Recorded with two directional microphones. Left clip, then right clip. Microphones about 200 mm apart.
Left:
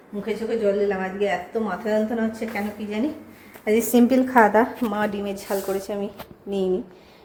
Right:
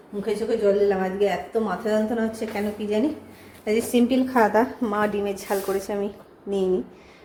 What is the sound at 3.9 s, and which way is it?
Speech, 20° left (ahead or behind).